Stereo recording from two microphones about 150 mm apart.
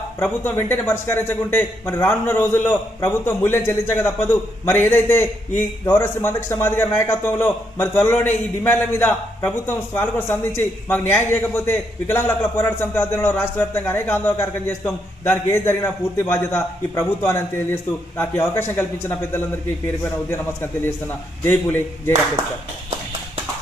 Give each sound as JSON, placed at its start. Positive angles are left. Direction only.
{"t": 0.2, "sound": "a man's voice", "side_deg": 15}